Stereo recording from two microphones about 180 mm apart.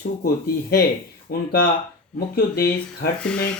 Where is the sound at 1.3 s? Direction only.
55° left (ahead or behind).